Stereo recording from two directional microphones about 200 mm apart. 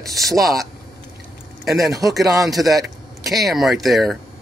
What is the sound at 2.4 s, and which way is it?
Speech, centre (ahead or behind).